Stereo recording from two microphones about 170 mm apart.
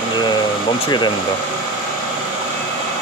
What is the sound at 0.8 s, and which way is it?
Speech, 25° left (ahead or behind).